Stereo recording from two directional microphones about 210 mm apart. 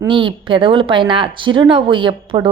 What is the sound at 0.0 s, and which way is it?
A woman's voice, 25° right (ahead or behind).